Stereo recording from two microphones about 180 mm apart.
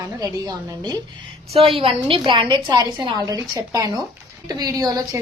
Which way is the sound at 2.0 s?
30° right (ahead or behind).